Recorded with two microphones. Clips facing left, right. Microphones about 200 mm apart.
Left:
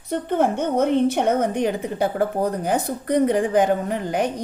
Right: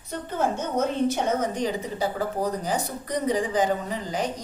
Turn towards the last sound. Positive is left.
turn(degrees=60)  # may be behind; listen again after turning